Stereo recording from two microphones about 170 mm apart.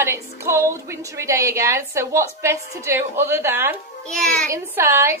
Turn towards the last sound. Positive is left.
turn(degrees=-15)  # may be behind; listen again after turning